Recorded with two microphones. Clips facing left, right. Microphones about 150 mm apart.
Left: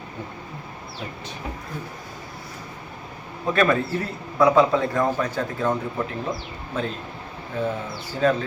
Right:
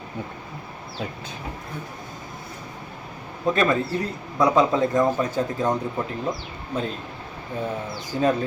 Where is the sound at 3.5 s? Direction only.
20° right (ahead or behind).